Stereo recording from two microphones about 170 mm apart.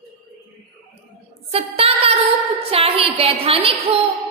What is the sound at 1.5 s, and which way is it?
Music, 35° right (ahead or behind).